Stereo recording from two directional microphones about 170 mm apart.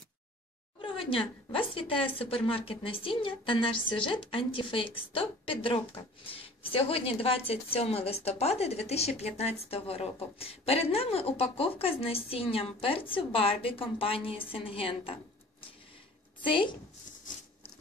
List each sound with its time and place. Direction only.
0.7 s speech: 30° left (ahead or behind)
16.4 s a woman's voice: 30° left (ahead or behind)